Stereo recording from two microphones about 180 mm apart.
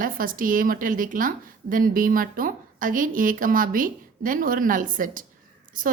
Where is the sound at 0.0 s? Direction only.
50° right (ahead or behind).